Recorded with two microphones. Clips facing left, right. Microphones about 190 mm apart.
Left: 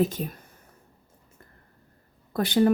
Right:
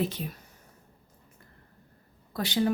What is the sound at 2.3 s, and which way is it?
Speech, 55° left (ahead or behind).